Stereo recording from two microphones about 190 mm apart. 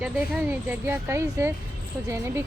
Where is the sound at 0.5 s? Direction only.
10° right (ahead or behind).